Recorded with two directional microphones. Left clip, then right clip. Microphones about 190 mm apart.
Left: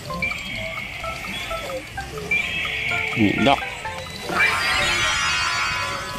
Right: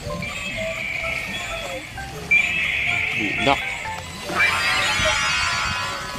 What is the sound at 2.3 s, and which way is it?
Music, 15° right (ahead or behind).